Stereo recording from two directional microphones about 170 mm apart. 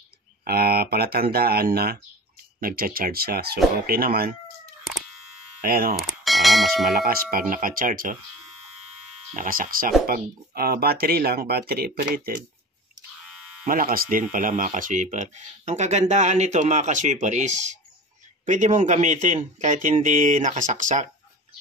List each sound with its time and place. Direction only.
0.5 s speech: 65° right (ahead or behind)
5.6 s speech: 60° right (ahead or behind)
5.9 s bell: centre (ahead or behind)
7.0 s speech: 60° right (ahead or behind)
9.3 s speech: 55° right (ahead or behind)
13.7 s speech: 55° right (ahead or behind)